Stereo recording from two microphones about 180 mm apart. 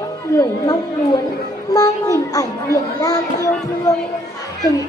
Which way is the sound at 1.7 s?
20° left (ahead or behind).